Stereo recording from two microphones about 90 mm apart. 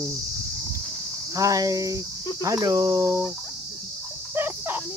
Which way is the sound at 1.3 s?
40° right (ahead or behind).